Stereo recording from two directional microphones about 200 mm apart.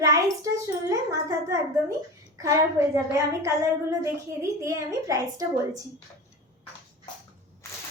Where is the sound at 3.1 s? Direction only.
15° right (ahead or behind).